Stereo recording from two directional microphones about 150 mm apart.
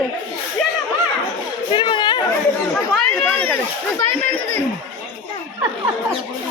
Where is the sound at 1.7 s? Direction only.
30° left (ahead or behind).